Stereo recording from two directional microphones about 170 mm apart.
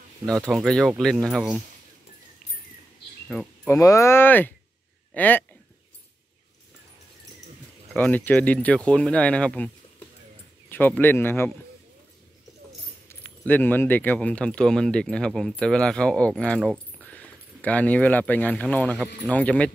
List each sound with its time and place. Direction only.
0.5 s speech: centre (ahead or behind)
3.3 s speech: 5° left (ahead or behind)
3.7 s speech: 20° left (ahead or behind)
7.9 s speech: 10° left (ahead or behind)
10.7 s speech: 10° left (ahead or behind)
13.1 s speech: 10° left (ahead or behind)